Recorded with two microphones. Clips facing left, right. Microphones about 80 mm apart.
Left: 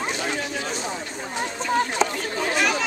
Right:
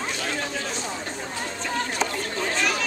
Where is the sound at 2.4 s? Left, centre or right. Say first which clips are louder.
Left 3 dB; centre.